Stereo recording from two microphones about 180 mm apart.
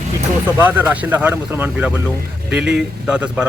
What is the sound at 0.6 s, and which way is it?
Speech, 10° right (ahead or behind).